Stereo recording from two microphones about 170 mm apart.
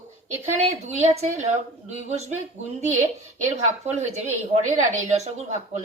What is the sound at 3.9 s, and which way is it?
A woman's voice, 40° right (ahead or behind).